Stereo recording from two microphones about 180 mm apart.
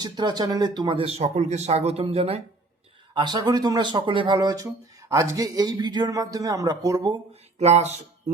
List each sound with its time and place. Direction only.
0.0 s speech: 25° right (ahead or behind)
3.2 s speech: 25° right (ahead or behind)
7.6 s speech: 40° right (ahead or behind)